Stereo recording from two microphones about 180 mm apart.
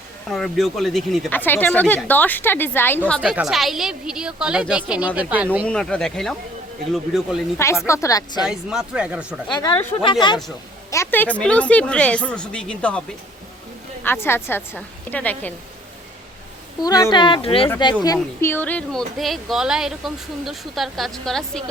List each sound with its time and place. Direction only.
0.3 s speech: centre (ahead or behind)
3.2 s speech: 5° right (ahead or behind)
5.6 s speech: 5° left (ahead or behind)
7.9 s speech: 15° left (ahead or behind)
8.4 s speech: 5° right (ahead or behind)
9.5 s speech: 20° left (ahead or behind)
10.9 s speech: 10° left (ahead or behind)
14.0 s speech: 10° left (ahead or behind)
16.8 s speech: 20° left (ahead or behind)
18.0 s speech: 15° left (ahead or behind); by 21.6 s centre (ahead or behind)